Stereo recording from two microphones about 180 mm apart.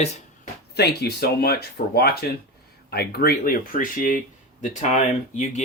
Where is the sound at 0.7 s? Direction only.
65° left (ahead or behind); by 5.6 s 45° left (ahead or behind).